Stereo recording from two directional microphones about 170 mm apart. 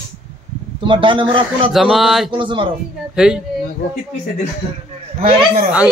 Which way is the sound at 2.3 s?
30° right (ahead or behind).